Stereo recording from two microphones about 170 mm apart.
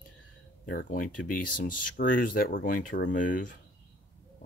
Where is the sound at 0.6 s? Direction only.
60° left (ahead or behind).